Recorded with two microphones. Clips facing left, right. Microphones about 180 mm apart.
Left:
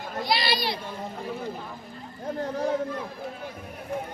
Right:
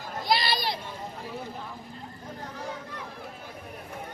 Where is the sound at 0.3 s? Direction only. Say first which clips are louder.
Even; 45° right (ahead or behind).